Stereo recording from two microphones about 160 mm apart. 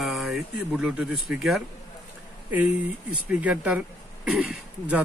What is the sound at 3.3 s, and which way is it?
Speech, 10° right (ahead or behind).